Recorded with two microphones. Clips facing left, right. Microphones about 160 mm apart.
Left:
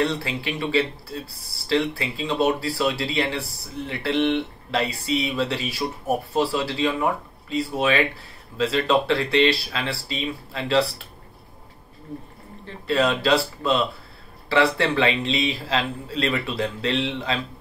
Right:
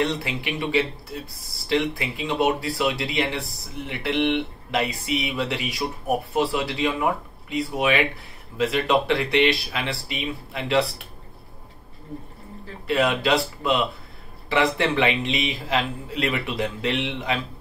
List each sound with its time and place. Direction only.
0.0 s speech: 20° right (ahead or behind)
12.8 s speech: 15° right (ahead or behind)